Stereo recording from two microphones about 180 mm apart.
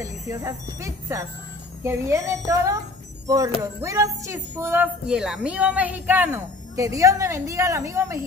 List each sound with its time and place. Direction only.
0.0 s a woman's voice: 20° right (ahead or behind)
5.0 s a woman's voice: 5° right (ahead or behind)